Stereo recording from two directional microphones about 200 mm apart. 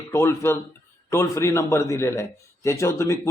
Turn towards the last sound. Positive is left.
turn(degrees=15)  # may be behind; listen again after turning